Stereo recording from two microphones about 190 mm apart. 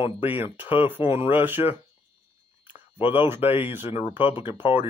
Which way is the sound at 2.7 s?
30° left (ahead or behind).